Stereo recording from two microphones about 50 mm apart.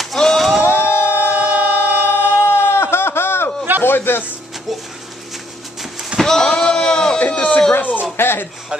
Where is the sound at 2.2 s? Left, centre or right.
Left.